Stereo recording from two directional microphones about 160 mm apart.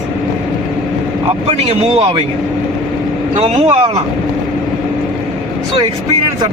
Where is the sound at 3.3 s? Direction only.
35° right (ahead or behind).